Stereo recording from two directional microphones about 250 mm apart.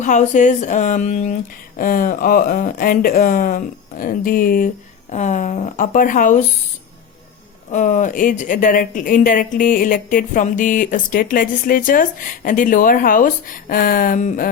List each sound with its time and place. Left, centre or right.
0.0 s speech: left
7.7 s speech: left